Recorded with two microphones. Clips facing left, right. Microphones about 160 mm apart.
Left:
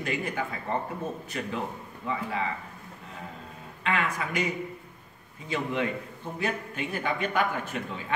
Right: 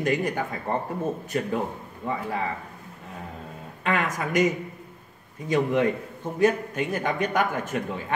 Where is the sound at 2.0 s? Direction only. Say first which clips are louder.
Right 3 dB; 55° right (ahead or behind).